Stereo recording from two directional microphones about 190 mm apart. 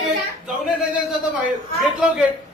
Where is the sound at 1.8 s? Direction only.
5° right (ahead or behind).